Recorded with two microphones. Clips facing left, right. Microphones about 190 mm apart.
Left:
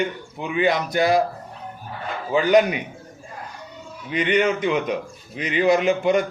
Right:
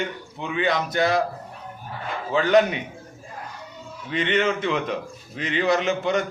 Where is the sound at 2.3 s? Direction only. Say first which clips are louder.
Left 2 dB; 10° left (ahead or behind).